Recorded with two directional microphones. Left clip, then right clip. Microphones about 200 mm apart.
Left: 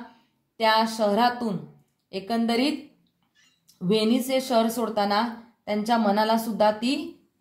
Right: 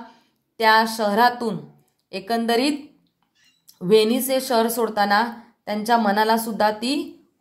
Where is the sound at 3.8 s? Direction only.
30° right (ahead or behind).